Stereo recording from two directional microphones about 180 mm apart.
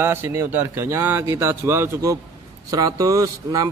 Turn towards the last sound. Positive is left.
turn(degrees=-20)  # may be behind; listen again after turning